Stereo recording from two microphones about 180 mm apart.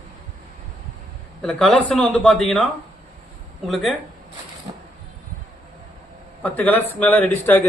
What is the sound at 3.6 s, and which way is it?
Speech, centre (ahead or behind).